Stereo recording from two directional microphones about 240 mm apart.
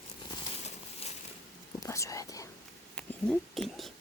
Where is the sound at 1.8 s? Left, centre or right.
Centre.